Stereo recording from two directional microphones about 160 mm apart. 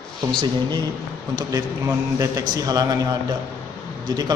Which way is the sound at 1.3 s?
20° right (ahead or behind).